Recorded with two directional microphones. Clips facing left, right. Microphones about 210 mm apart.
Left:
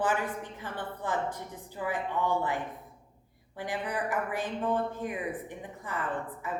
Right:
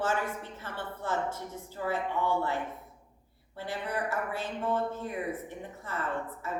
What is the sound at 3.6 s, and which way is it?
A woman's voice, 15° left (ahead or behind).